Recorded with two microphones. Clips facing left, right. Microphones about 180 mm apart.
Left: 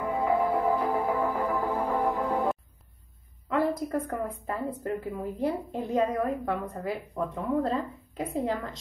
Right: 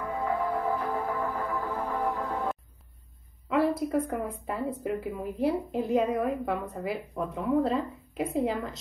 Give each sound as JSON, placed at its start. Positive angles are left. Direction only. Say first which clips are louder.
{"t": 0.0, "sound": "music", "louder": "left 4 dB", "side_deg": 10}
{"t": 3.4, "sound": "a sound", "louder": "right 1 dB", "side_deg": -5}
{"t": 4.8, "sound": "a woman's voice", "louder": "even", "side_deg": -5}